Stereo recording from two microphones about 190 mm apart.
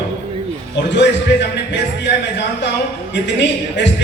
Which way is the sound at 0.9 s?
70° left (ahead or behind).